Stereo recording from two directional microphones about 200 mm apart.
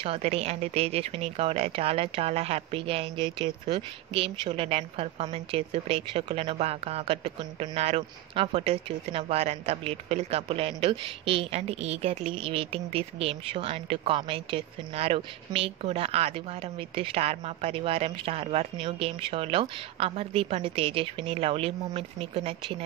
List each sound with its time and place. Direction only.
0.0 s speech: 30° right (ahead or behind)